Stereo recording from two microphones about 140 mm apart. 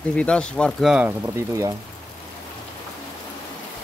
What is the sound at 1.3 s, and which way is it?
Speech, 20° right (ahead or behind).